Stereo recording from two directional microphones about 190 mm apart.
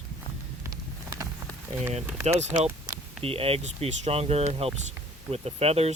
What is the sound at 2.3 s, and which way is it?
Speech, 35° right (ahead or behind).